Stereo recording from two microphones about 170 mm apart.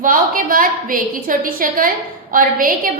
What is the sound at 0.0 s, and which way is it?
A woman's voice, 55° right (ahead or behind).